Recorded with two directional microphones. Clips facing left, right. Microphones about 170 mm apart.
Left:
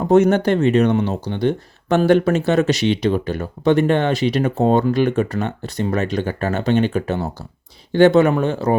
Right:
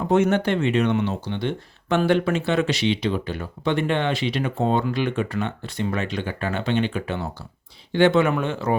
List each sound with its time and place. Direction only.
0.0 s speech: 40° left (ahead or behind)